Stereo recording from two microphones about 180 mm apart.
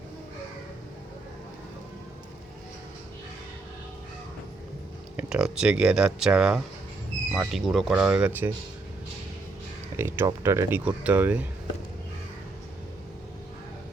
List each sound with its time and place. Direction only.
5.1 s speech: 5° right (ahead or behind)
10.0 s speech: 15° right (ahead or behind)